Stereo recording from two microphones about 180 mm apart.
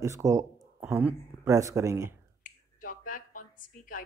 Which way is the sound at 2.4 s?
50° left (ahead or behind).